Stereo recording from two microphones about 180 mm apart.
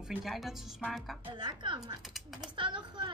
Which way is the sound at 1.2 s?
25° right (ahead or behind).